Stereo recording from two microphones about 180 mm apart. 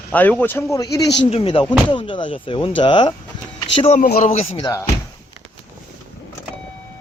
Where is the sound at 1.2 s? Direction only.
30° left (ahead or behind).